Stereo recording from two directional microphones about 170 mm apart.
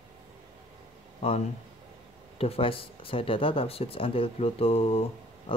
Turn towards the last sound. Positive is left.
turn(degrees=35)  # may be behind; listen again after turning